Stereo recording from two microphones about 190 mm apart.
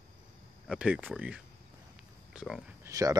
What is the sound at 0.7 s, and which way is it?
Speech, 5° right (ahead or behind).